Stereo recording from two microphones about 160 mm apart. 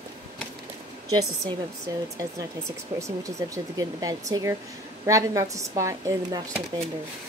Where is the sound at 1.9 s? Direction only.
20° right (ahead or behind).